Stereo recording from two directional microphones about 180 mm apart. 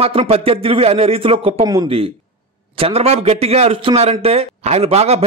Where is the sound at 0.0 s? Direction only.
30° right (ahead or behind).